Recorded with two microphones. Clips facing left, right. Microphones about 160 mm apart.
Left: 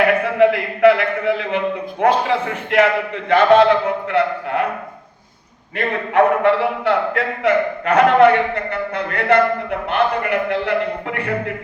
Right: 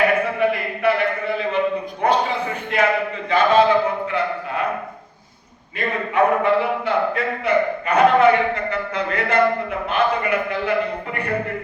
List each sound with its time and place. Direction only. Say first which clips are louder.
0.3 s a man's voice: left 6 dB; 90° left; by 4.6 s 75° left (ahead or behind)
5.7 s a man's voice: left 4 dB; 75° left (ahead or behind)
9.0 s a man's voice: left 3 dB; 60° left (ahead or behind)